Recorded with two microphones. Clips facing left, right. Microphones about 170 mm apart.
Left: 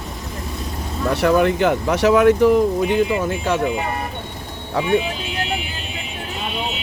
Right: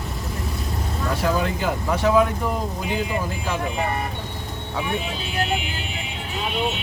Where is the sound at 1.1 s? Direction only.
65° left (ahead or behind).